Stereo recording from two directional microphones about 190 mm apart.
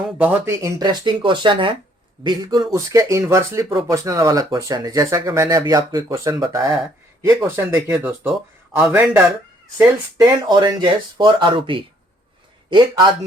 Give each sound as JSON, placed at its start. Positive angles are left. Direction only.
{"t": 0.0, "sound": "speech", "side_deg": -10}
{"t": 9.7, "sound": "speech", "side_deg": -20}